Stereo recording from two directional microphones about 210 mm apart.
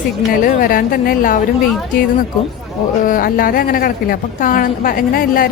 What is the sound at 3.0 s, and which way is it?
A woman's voice, 40° left (ahead or behind).